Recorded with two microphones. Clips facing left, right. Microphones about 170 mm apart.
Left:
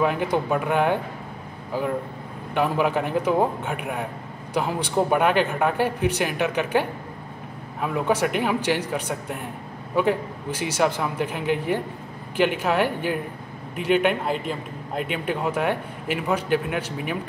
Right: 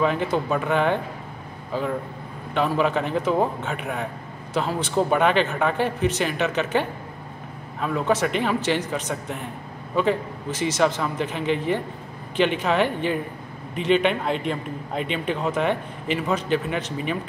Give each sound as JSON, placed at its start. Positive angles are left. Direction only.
{"t": 0.0, "sound": "speech", "side_deg": 10}